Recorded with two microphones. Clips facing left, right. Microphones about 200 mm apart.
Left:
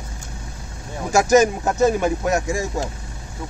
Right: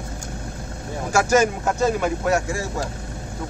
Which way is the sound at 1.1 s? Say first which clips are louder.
Left 3 dB; 20° left (ahead or behind).